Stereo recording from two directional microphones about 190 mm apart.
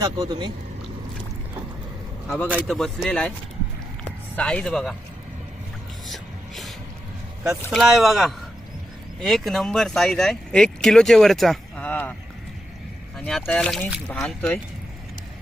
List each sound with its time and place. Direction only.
0.0 s speech: 20° right (ahead or behind)
2.5 s speech: 5° right (ahead or behind)
4.4 s speech: 5° left (ahead or behind)
6.1 s music: centre (ahead or behind)
7.6 s speech: 5° left (ahead or behind)
13.1 s speech: 5° left (ahead or behind)